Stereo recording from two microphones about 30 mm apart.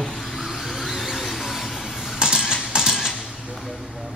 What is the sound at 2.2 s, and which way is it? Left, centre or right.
Mechanisms, centre.